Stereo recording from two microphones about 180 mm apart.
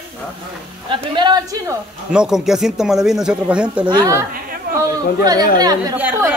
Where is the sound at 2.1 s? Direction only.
Centre (ahead or behind).